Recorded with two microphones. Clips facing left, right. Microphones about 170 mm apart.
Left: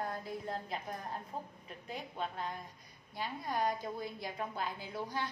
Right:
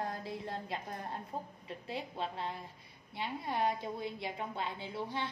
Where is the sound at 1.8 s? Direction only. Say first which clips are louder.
Right 1 dB; 30° right (ahead or behind).